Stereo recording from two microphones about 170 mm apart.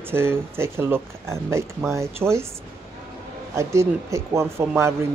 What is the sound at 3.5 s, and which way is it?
Speech, 15° right (ahead or behind).